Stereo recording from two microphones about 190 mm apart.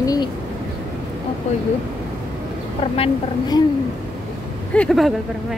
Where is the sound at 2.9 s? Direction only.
30° left (ahead or behind).